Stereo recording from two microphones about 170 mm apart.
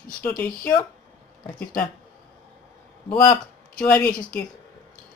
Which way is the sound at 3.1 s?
20° left (ahead or behind).